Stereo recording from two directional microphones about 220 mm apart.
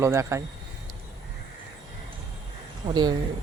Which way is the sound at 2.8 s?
20° right (ahead or behind).